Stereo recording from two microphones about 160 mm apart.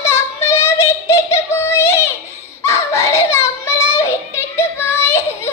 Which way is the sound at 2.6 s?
15° left (ahead or behind).